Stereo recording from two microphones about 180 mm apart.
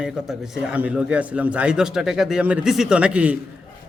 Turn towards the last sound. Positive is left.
turn(degrees=-5)  # may be behind; listen again after turning